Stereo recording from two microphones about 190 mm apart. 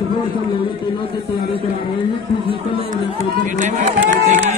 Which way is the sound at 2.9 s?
40° right (ahead or behind).